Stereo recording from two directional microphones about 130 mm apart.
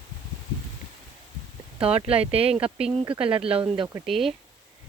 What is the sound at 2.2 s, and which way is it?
Speech, 50° right (ahead or behind).